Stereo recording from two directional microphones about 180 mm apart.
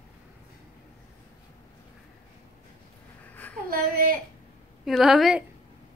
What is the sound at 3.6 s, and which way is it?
Speech, 55° right (ahead or behind).